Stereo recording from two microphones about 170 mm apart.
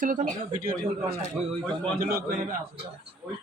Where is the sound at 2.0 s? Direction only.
60° right (ahead or behind).